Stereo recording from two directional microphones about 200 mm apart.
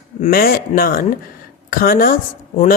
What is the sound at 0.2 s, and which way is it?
Speech, 45° left (ahead or behind).